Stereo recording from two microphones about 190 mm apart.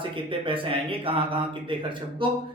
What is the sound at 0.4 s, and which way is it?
Speech, 30° right (ahead or behind).